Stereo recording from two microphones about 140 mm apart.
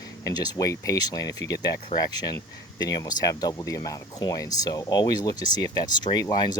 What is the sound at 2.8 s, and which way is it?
Speech, 30° left (ahead or behind).